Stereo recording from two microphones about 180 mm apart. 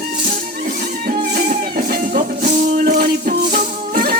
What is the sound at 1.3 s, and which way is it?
Music, 50° right (ahead or behind).